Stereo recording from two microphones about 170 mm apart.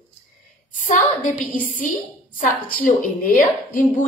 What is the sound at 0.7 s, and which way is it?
A woman's voice, 45° left (ahead or behind).